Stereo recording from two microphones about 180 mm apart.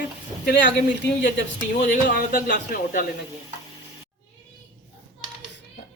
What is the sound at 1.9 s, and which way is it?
Speech, 50° left (ahead or behind).